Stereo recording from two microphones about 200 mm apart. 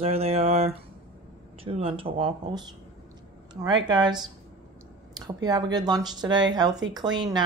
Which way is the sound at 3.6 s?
20° right (ahead or behind).